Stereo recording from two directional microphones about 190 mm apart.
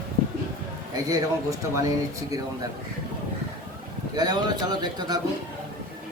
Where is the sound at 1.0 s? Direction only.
20° right (ahead or behind).